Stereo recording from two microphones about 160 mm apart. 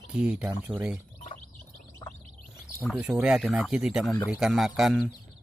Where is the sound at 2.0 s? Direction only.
20° left (ahead or behind).